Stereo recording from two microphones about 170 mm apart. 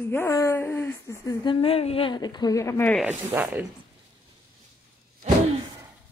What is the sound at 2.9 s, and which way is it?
Speech, 5° right (ahead or behind).